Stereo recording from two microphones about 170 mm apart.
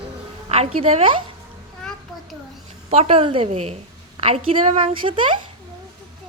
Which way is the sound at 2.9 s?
35° right (ahead or behind).